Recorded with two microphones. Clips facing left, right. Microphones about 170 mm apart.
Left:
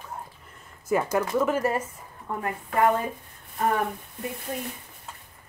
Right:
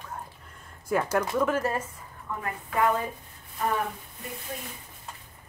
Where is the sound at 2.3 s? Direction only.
35° left (ahead or behind).